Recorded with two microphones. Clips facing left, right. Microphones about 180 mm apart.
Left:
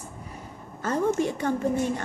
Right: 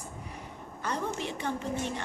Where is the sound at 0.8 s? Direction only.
45° left (ahead or behind).